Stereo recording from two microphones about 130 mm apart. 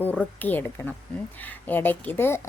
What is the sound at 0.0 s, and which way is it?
A woman's voice, 10° left (ahead or behind).